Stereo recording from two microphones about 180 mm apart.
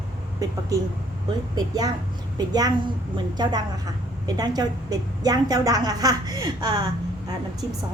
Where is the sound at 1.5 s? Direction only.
20° right (ahead or behind).